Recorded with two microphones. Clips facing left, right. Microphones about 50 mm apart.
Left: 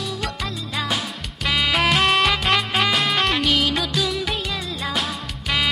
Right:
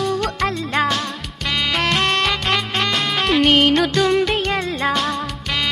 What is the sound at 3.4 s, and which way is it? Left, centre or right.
Music, right.